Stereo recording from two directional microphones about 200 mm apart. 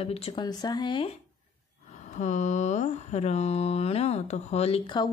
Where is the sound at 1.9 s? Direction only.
35° left (ahead or behind).